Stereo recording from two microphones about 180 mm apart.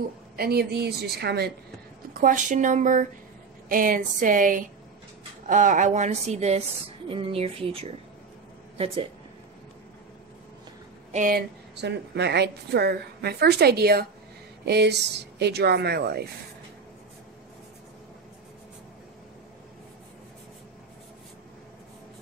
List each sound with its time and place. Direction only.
0.4 s a woman's voice: 60° right (ahead or behind)
2.1 s a woman's voice: 45° right (ahead or behind); by 9.0 s 30° right (ahead or behind)
11.1 s speech: 45° right (ahead or behind)
11.7 s a woman's voice: 70° right (ahead or behind)